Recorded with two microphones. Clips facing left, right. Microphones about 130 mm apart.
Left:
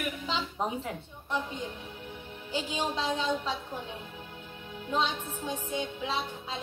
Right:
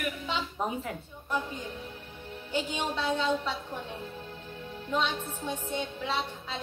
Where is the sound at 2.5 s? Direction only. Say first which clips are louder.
Even; 10° left (ahead or behind).